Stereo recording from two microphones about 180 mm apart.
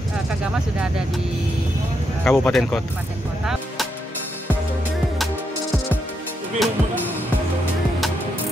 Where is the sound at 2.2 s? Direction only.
5° left (ahead or behind).